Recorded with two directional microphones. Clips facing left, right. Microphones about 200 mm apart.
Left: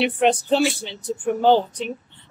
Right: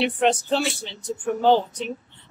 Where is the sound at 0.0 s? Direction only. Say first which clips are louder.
Left 2 dB; 10° left (ahead or behind).